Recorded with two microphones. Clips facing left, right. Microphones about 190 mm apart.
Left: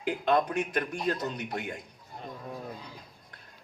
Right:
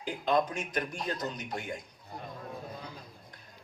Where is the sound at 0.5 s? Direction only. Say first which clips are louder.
Left 4 dB; 60° left (ahead or behind).